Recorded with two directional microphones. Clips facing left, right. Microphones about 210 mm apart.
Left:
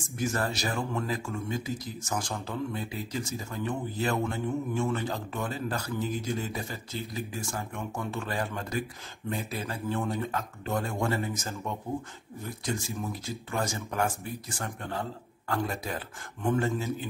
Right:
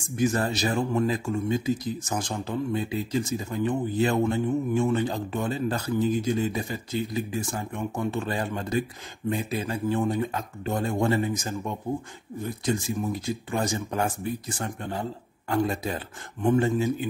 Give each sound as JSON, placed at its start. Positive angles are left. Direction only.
{"t": 0.0, "sound": "speech", "side_deg": -15}
{"t": 12.7, "sound": "speech", "side_deg": -15}